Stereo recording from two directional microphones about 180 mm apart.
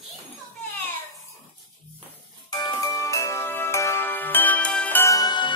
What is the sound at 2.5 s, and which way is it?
Music, 20° left (ahead or behind).